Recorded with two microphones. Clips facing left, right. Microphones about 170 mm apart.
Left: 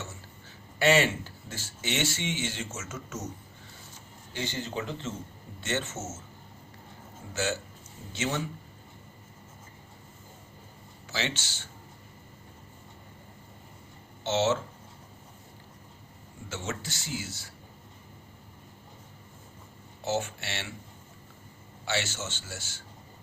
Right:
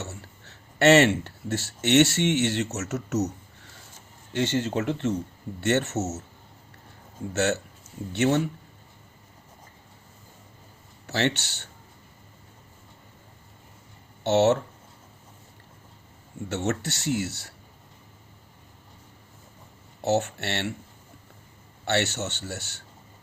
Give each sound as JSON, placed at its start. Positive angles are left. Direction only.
{"t": 0.0, "sound": "speech", "side_deg": -70}
{"t": 7.3, "sound": "speech", "side_deg": -70}
{"t": 11.0, "sound": "speech", "side_deg": -65}
{"t": 14.3, "sound": "a man's voice", "side_deg": -65}
{"t": 16.5, "sound": "speech", "side_deg": -65}
{"t": 20.0, "sound": "a man's voice", "side_deg": -65}
{"t": 21.8, "sound": "a man's voice", "side_deg": -65}